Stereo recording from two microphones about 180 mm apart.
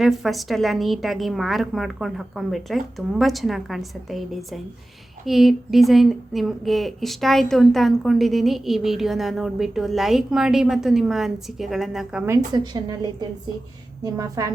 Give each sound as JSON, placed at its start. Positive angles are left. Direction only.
{"t": 0.0, "sound": "speech", "side_deg": 0}
{"t": 12.5, "sound": "a woman's voice", "side_deg": -20}